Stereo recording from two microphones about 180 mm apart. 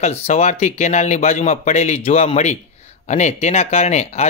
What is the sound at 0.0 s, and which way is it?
Speech, 35° left (ahead or behind).